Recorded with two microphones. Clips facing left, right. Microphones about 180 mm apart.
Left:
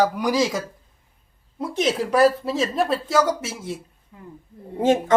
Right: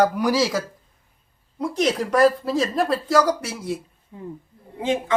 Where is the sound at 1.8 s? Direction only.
5° left (ahead or behind).